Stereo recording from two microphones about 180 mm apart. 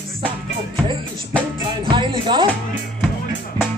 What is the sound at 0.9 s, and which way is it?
Speech, 25° right (ahead or behind).